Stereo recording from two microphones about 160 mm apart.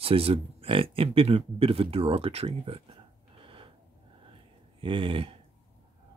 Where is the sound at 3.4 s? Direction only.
35° right (ahead or behind).